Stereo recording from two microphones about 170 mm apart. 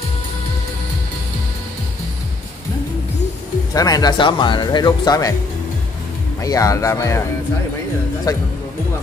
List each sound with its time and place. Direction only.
3.7 s speech: 20° left (ahead or behind)
6.4 s speech: 20° left (ahead or behind)
8.3 s speech: 20° left (ahead or behind)